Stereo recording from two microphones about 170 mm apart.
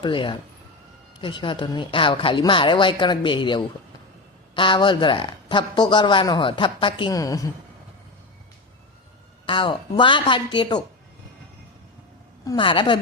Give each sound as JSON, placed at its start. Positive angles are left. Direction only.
{"t": 0.0, "sound": "speech", "side_deg": 30}
{"t": 9.5, "sound": "speech", "side_deg": 30}
{"t": 12.5, "sound": "speech", "side_deg": 30}